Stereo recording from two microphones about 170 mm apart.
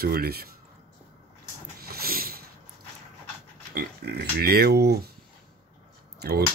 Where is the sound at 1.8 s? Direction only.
60° right (ahead or behind).